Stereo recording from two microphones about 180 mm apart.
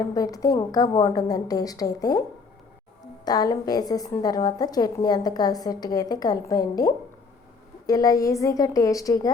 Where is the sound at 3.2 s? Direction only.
20° left (ahead or behind).